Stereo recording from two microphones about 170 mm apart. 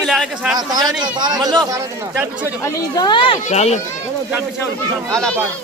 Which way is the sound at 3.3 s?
40° left (ahead or behind).